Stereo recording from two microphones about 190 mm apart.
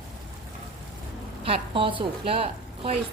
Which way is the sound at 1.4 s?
30° right (ahead or behind).